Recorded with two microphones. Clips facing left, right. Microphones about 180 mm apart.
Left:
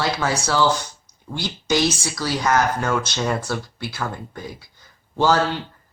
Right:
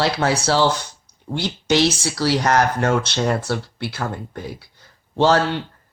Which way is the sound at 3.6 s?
70° right (ahead or behind).